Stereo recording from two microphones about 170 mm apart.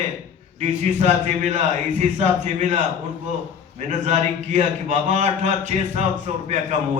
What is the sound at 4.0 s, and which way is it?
A man's voice, 45° right (ahead or behind).